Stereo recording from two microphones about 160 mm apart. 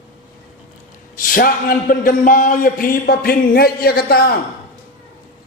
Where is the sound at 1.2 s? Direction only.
60° left (ahead or behind).